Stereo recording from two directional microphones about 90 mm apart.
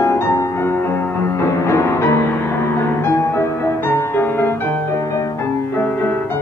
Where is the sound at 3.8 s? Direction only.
25° left (ahead or behind).